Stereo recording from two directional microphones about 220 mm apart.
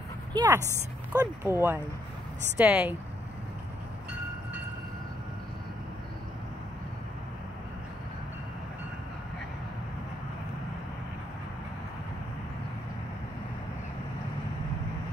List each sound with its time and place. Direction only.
0.3 s speech: 20° right (ahead or behind)